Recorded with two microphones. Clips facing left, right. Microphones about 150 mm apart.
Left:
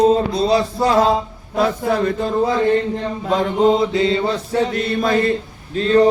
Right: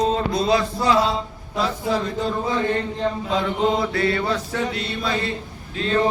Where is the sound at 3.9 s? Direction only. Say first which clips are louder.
Left 4 dB; 20° left (ahead or behind).